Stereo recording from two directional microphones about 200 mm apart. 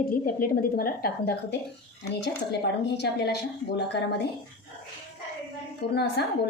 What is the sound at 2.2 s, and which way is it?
Speech, 60° left (ahead or behind).